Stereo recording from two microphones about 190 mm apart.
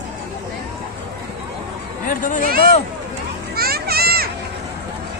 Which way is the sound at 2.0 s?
45° left (ahead or behind).